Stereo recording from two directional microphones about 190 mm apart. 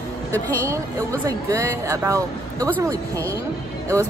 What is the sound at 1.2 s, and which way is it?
Speech, 15° right (ahead or behind).